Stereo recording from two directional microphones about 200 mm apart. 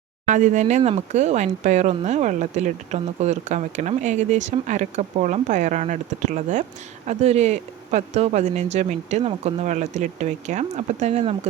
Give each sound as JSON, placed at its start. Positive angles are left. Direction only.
{"t": 0.3, "sound": "speech", "side_deg": -40}